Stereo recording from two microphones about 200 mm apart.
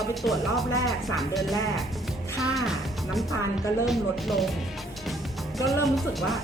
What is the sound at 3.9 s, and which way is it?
Speech, centre (ahead or behind).